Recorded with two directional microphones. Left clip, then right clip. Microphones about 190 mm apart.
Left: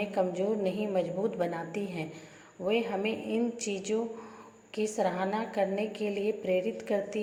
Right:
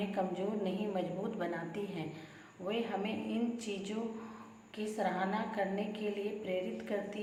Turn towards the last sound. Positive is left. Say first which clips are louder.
# left 7 dB
turn(degrees=30)  # may be behind; listen again after turning